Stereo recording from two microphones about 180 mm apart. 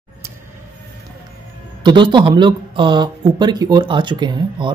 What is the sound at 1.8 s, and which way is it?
Speech, 25° right (ahead or behind).